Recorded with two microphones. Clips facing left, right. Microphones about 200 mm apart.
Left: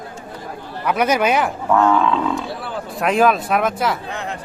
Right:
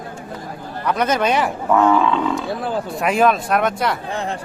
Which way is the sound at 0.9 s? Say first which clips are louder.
Left 1 dB; 10° left (ahead or behind).